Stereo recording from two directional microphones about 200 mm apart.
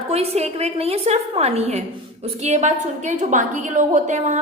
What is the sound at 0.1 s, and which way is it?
A woman's voice, 30° right (ahead or behind).